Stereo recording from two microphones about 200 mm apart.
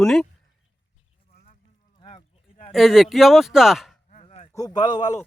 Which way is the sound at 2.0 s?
25° left (ahead or behind).